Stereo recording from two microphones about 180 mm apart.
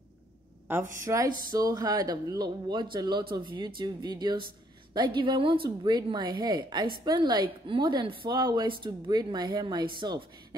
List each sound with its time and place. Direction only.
1.0 s a woman's voice: 20° right (ahead or behind)